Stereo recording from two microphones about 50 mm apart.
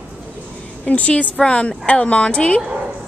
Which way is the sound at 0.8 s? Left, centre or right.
Left.